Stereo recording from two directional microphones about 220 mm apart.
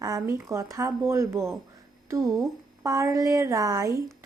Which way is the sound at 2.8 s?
15° right (ahead or behind).